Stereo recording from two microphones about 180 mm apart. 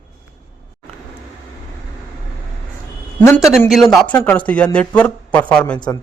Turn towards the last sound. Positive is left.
turn(degrees=25)  # may be behind; listen again after turning